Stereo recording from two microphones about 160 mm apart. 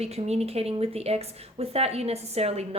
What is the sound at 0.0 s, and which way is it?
Speech, 40° right (ahead or behind).